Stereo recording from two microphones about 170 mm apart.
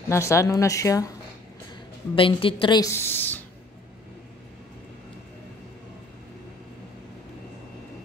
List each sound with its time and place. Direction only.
0.1 s a woman's voice: 15° left (ahead or behind)
2.1 s a woman's voice: 30° left (ahead or behind); by 3.4 s 10° left (ahead or behind)